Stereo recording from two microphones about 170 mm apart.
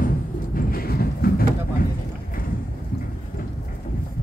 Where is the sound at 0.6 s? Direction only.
60° left (ahead or behind).